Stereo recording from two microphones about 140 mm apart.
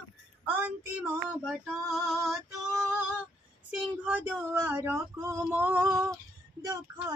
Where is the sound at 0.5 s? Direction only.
15° right (ahead or behind).